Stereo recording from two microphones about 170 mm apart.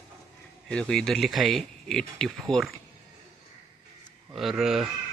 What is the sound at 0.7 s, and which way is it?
Speech, 5° left (ahead or behind).